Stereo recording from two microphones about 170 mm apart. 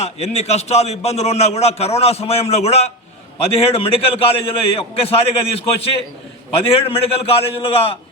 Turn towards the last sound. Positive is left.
turn(degrees=35)  # may be behind; listen again after turning